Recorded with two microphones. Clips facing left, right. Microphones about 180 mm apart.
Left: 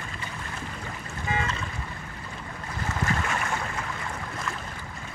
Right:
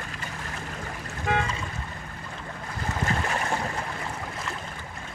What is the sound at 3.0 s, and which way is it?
Boat, 35° right (ahead or behind).